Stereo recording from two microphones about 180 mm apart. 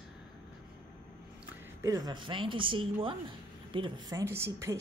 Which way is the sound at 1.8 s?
20° right (ahead or behind).